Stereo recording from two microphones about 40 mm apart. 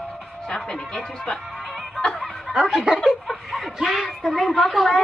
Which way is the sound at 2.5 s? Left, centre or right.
Right.